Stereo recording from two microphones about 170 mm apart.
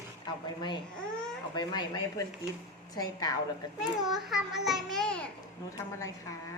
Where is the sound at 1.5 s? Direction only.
25° left (ahead or behind).